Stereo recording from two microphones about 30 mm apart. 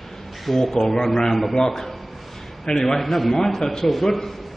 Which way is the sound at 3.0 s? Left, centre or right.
Centre.